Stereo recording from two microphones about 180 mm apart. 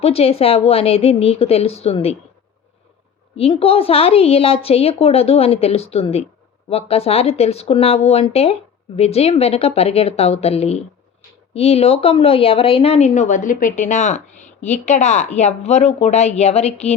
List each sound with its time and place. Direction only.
0.0 s speech: 35° left (ahead or behind)
3.3 s speech: 35° left (ahead or behind)